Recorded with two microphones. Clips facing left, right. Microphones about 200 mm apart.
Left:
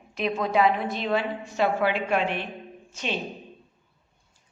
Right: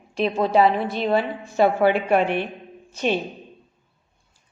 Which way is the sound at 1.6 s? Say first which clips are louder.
Right 6 dB; 50° right (ahead or behind).